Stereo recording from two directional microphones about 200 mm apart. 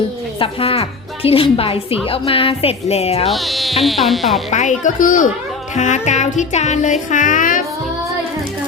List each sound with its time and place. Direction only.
0.3 s a woman's voice: 30° left (ahead or behind)
3.2 s insect: centre (ahead or behind)
4.5 s music: 40° left (ahead or behind)